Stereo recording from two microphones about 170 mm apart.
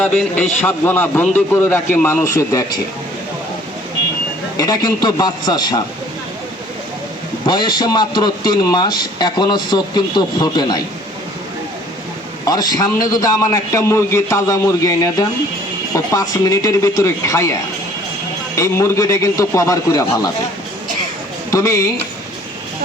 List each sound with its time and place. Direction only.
0.0 s a man's voice: centre (ahead or behind); by 2.8 s 20° left (ahead or behind)
4.5 s a man's voice: 25° left (ahead or behind)
7.4 s a man's voice: 25° left (ahead or behind)
12.5 s a man's voice: 25° left (ahead or behind)
18.5 s a man's voice: 15° left (ahead or behind)
21.5 s a man's voice: 20° left (ahead or behind)